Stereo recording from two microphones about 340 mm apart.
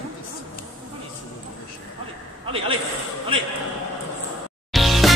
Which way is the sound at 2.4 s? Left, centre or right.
Centre.